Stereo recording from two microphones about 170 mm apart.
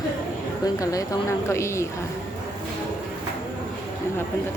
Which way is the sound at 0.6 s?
20° left (ahead or behind).